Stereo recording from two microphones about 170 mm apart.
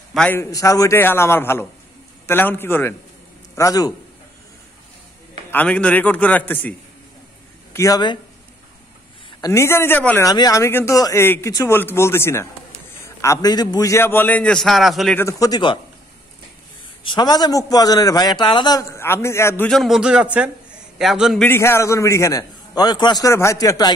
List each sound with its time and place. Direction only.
0.1 s a man's voice: 5° left (ahead or behind)
0.4 s a man's voice: 20° left (ahead or behind)
5.5 s speech: 10° left (ahead or behind)
7.7 s a man's voice: 20° left (ahead or behind)
9.4 s speech: 15° left (ahead or behind); by 15.1 s centre (ahead or behind)
15.1 s a man's voice: 20° left (ahead or behind)
17.0 s a man's voice: 25° left (ahead or behind)
19.7 s a man's voice: centre (ahead or behind)
21.5 s a man's voice: 15° left (ahead or behind)